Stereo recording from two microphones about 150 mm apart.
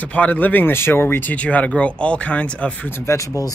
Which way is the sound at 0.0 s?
10° left (ahead or behind).